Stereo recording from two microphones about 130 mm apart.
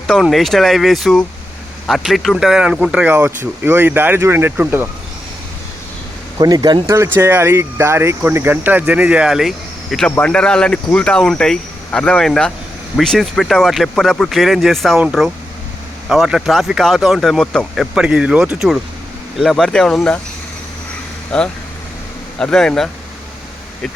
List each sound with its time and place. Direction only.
0.1 s speech: centre (ahead or behind); by 4.9 s 15° right (ahead or behind)
6.4 s speech: 30° right (ahead or behind); by 17.8 s 5° left (ahead or behind)
17.9 s speech: 5° right (ahead or behind)
21.3 s speech: 5° left (ahead or behind)